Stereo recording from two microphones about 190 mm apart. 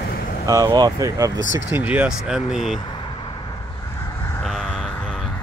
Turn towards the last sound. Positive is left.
turn(degrees=0)  # may be behind; listen again after turning